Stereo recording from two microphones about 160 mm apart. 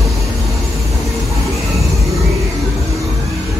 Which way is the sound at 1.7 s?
Centre (ahead or behind).